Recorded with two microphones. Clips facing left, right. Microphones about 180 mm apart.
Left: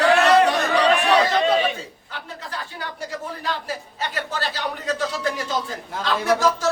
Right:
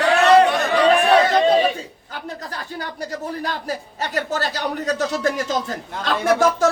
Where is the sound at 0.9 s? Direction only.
35° right (ahead or behind).